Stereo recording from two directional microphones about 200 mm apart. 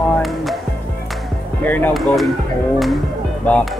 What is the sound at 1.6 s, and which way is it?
Speech, 10° left (ahead or behind).